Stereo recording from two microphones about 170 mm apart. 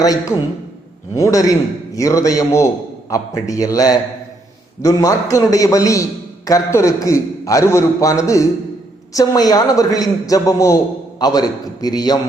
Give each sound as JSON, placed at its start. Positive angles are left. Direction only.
{"t": 0.0, "sound": "a man's voice", "side_deg": 20}